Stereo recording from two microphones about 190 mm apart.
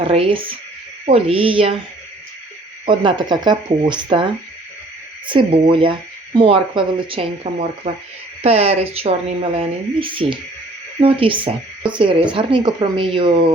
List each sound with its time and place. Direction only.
0.0 s speech: 30° right (ahead or behind)
2.8 s a woman's voice: 25° right (ahead or behind)